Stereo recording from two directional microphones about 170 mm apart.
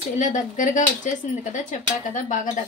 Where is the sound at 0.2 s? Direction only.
50° left (ahead or behind).